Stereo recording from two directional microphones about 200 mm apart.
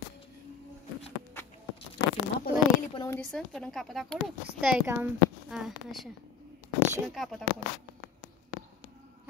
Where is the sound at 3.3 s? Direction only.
Centre (ahead or behind).